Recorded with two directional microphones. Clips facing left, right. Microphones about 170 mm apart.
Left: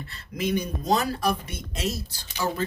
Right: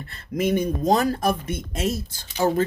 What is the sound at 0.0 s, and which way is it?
Speech, 50° right (ahead or behind).